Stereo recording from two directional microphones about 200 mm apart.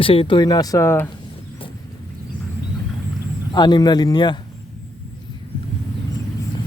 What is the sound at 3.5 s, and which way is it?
Speech, 20° left (ahead or behind).